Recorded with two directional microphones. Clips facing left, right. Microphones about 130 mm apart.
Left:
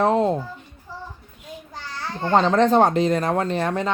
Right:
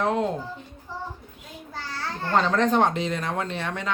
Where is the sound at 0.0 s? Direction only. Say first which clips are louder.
Left 5 dB; 35° left (ahead or behind).